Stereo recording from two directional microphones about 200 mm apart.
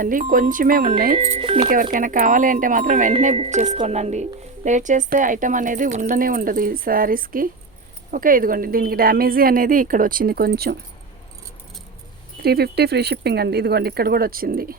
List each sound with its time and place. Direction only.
0.0 s speech: 40° right (ahead or behind)
1.7 s a woman's voice: 45° right (ahead or behind)
12.4 s speech: 50° right (ahead or behind)